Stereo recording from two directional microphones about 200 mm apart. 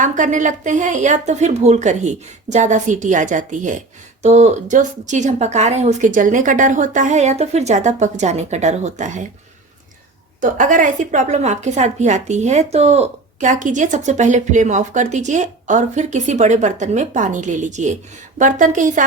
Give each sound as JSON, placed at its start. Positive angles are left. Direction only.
{"t": 0.0, "sound": "a woman's voice", "side_deg": -40}
{"t": 10.4, "sound": "a woman's voice", "side_deg": -40}